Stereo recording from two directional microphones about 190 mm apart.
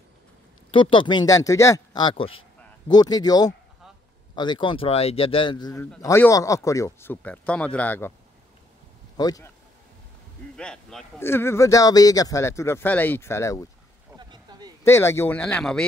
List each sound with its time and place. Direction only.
0.7 s speech: 25° left (ahead or behind); by 8.1 s 10° left (ahead or behind)
9.1 s speech: 20° left (ahead or behind)
10.5 s speech: 5° left (ahead or behind)
14.1 s a sound: 20° right (ahead or behind)
14.8 s speech: 15° left (ahead or behind)